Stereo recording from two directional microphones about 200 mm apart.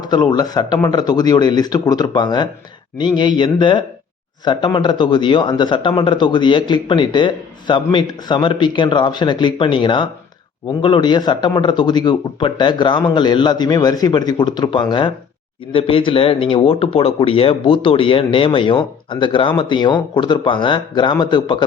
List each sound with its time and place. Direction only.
0.0 s speech: 20° left (ahead or behind)